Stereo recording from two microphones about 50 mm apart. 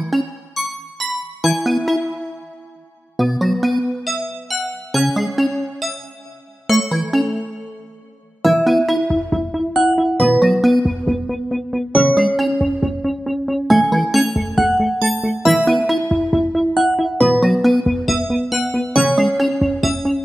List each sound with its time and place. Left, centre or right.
0.1 s music: centre
3.2 s music: centre
6.7 s music: centre
8.6 s music: centre